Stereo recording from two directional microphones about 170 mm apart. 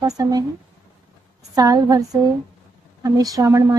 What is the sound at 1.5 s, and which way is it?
Speech, 20° right (ahead or behind).